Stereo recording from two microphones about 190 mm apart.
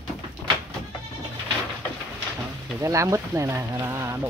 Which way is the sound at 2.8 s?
15° right (ahead or behind).